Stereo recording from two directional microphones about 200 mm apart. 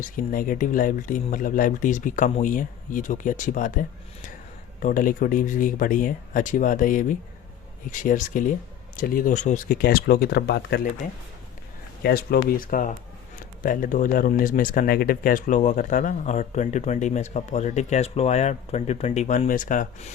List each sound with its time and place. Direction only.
0.0 s speech: 45° left (ahead or behind)
4.8 s speech: 40° left (ahead or behind)
12.0 s speech: 50° left (ahead or behind)